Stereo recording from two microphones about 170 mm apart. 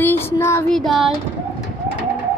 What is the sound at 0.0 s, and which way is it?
Child singing, 15° left (ahead or behind).